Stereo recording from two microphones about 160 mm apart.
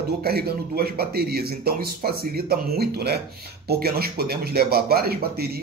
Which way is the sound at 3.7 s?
75° right (ahead or behind).